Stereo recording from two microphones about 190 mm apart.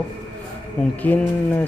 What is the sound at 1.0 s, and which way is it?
Speech, 10° left (ahead or behind).